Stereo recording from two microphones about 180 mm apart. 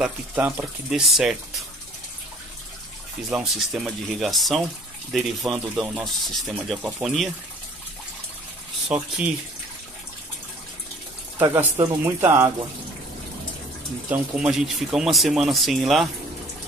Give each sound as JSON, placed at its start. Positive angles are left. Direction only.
{"t": 0.0, "sound": "speech", "side_deg": -10}
{"t": 3.3, "sound": "speech", "side_deg": -5}
{"t": 8.8, "sound": "speech", "side_deg": -5}
{"t": 11.3, "sound": "speech", "side_deg": -15}
{"t": 14.0, "sound": "speech", "side_deg": -5}